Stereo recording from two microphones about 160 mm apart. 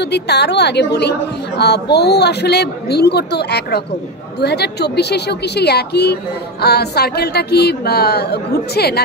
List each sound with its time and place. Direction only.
0.0 s a woman's voice: 90° left